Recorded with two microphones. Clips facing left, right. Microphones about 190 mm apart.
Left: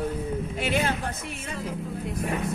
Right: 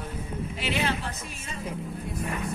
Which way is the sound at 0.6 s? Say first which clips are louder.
Left 2 dB; 50° left (ahead or behind).